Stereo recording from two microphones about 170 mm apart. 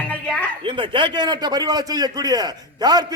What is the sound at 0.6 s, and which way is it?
A man's voice, 30° right (ahead or behind).